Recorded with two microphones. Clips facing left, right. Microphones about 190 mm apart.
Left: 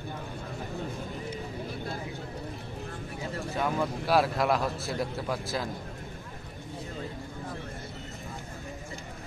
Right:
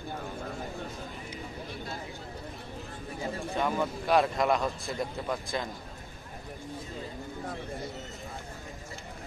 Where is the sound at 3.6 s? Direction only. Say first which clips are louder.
Left 1 dB; 5° left (ahead or behind).